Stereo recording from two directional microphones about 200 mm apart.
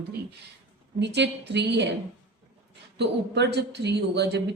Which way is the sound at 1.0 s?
60° right (ahead or behind).